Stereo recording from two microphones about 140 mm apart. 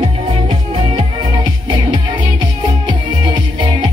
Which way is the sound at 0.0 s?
40° right (ahead or behind).